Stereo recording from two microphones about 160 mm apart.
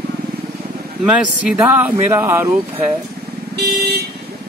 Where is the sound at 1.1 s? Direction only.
5° right (ahead or behind).